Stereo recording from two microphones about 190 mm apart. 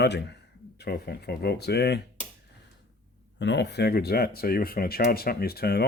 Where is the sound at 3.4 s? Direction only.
65° left (ahead or behind).